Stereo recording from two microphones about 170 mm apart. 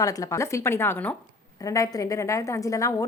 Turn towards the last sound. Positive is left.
turn(degrees=20)  # may be behind; listen again after turning